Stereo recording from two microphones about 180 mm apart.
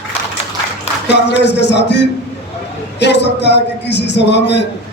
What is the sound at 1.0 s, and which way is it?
A man's voice, 75° left (ahead or behind).